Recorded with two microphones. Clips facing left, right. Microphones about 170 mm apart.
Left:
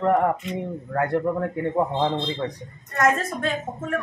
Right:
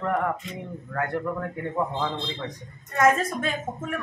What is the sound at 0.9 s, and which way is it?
A man's voice, 35° left (ahead or behind).